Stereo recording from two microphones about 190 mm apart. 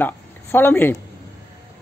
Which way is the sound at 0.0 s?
10° left (ahead or behind).